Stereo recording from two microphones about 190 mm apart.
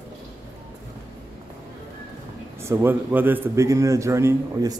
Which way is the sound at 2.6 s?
10° right (ahead or behind).